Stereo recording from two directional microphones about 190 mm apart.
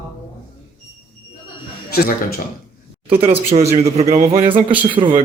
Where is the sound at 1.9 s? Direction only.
55° left (ahead or behind).